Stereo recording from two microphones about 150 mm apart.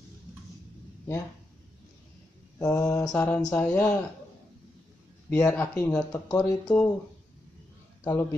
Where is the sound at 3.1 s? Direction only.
10° left (ahead or behind).